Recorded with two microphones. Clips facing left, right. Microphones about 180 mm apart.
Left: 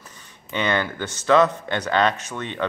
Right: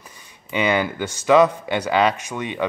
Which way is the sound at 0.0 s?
10° right (ahead or behind).